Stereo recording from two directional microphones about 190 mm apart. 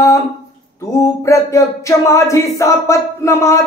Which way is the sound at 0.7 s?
15° left (ahead or behind).